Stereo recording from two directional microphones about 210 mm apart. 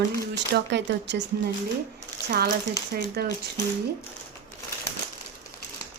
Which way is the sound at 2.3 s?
45° right (ahead or behind).